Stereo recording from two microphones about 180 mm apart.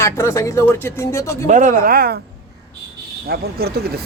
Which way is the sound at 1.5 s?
45° right (ahead or behind).